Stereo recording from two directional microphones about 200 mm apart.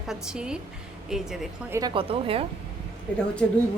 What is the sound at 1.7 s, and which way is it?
Speech, 25° right (ahead or behind).